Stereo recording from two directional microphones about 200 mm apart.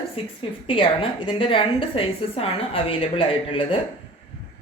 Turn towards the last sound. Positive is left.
turn(degrees=25)  # may be behind; listen again after turning